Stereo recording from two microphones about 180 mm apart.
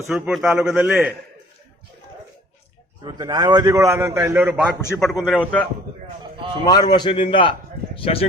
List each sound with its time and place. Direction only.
0.1 s a man's voice: 5° right (ahead or behind)
3.0 s a man's voice: 25° right (ahead or behind); by 5.5 s centre (ahead or behind)
6.7 s a man's voice: 25° left (ahead or behind)